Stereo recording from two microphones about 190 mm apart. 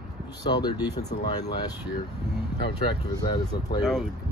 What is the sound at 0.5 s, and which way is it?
Speech, 20° left (ahead or behind).